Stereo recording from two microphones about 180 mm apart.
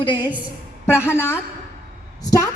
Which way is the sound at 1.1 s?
15° left (ahead or behind).